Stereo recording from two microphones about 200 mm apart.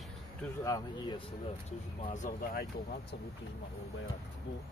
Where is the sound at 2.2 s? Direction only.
45° left (ahead or behind).